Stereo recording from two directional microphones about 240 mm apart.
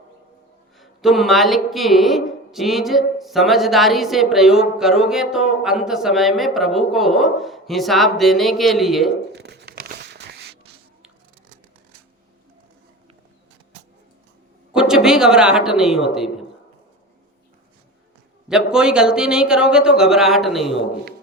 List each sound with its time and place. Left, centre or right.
0.8 s a woman's voice: centre
9.3 s a sound: right
14.7 s speech: centre
18.4 s a woman's voice: centre